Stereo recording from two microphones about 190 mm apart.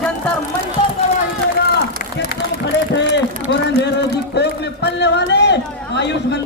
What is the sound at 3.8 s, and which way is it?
Speech, 60° left (ahead or behind).